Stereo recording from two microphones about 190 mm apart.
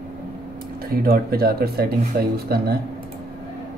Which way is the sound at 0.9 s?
50° right (ahead or behind).